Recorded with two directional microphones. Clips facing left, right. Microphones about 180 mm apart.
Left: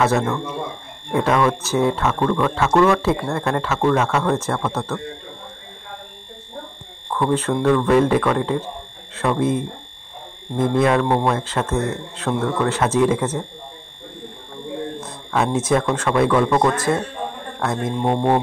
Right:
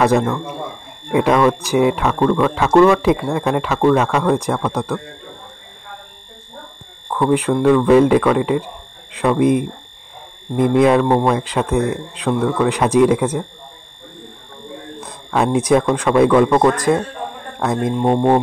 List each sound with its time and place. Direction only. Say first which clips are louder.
0.0 s speech: right 4 dB; 15° right (ahead or behind)
7.1 s speech: right 4 dB; 10° right (ahead or behind)
15.0 s a sound: right 5 dB; 15° right (ahead or behind)
15.9 s speech: right 5 dB; 15° right (ahead or behind)